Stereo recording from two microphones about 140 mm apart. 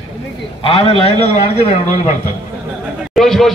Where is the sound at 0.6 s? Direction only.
40° left (ahead or behind).